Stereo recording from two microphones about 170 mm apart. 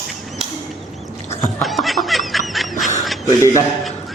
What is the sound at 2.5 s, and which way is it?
Honk, centre (ahead or behind).